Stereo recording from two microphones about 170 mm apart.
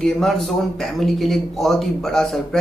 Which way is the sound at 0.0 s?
Centre (ahead or behind).